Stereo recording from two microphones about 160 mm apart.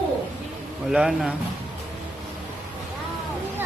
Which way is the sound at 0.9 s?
5° right (ahead or behind).